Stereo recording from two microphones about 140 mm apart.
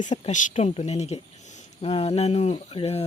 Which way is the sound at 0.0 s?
60° left (ahead or behind).